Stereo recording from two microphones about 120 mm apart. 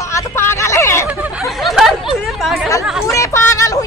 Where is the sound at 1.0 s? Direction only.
15° right (ahead or behind).